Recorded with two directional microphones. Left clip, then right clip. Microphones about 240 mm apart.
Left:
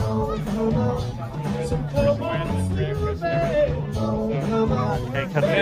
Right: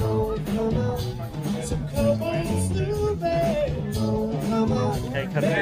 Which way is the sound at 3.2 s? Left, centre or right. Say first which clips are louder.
Left 4 dB; right.